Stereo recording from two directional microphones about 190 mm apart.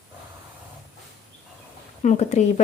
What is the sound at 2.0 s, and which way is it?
Speech, 40° left (ahead or behind).